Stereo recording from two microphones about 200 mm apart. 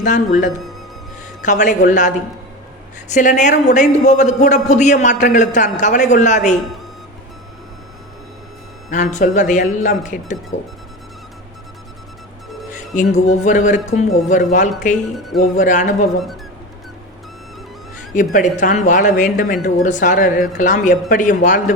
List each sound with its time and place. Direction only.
0.0 s a man's voice: 40° left (ahead or behind)
8.9 s a man's voice: 35° left (ahead or behind)
13.0 s a man's voice: 35° left (ahead or behind)
18.1 s a man's voice: 40° left (ahead or behind)